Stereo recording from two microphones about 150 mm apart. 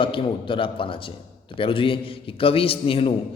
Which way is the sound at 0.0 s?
35° left (ahead or behind).